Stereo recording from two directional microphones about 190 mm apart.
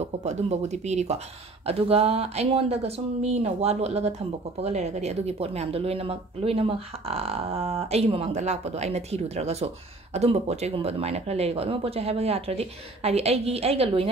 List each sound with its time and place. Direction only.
0.0 s speech: 35° right (ahead or behind)